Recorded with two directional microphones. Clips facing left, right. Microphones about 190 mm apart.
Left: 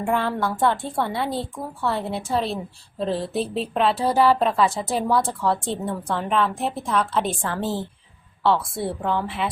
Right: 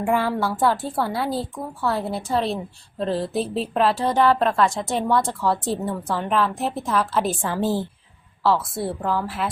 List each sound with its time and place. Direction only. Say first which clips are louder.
0.0 s speech: right 1 dB; 5° right (ahead or behind)